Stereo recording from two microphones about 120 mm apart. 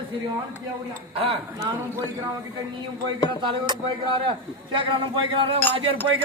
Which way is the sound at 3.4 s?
45° right (ahead or behind).